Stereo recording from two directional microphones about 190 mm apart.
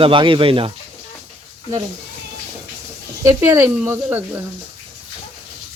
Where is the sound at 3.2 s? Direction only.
15° right (ahead or behind).